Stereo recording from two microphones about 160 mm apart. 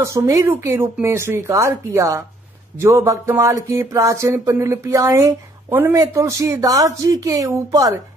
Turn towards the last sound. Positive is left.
turn(degrees=-20)  # may be behind; listen again after turning